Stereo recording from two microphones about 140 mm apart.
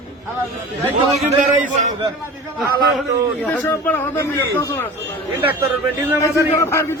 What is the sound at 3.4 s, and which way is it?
A man's voice, 10° left (ahead or behind).